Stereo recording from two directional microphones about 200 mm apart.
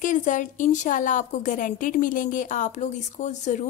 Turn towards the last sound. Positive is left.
turn(degrees=35)  # may be behind; listen again after turning